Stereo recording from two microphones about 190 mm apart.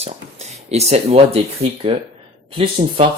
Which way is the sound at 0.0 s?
35° right (ahead or behind).